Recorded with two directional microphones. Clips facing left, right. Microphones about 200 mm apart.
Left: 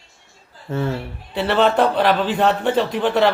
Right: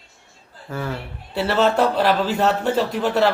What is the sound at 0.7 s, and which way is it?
Speech, 25° left (ahead or behind).